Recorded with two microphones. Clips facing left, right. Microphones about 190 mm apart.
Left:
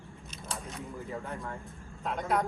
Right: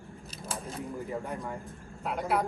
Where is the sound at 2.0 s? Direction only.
5° right (ahead or behind).